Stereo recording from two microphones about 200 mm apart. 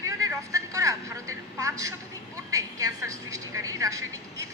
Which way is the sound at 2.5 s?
15° right (ahead or behind).